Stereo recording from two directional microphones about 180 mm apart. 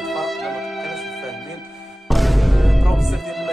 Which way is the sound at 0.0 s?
Centre (ahead or behind).